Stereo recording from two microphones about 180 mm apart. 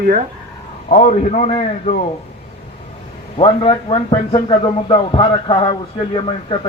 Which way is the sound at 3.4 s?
30° left (ahead or behind).